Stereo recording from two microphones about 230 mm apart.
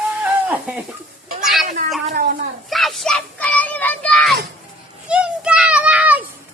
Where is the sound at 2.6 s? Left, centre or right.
Centre.